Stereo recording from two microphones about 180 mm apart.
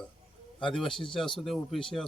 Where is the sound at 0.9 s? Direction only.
30° left (ahead or behind).